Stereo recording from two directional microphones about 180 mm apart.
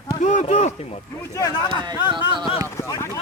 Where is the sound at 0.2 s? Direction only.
40° left (ahead or behind).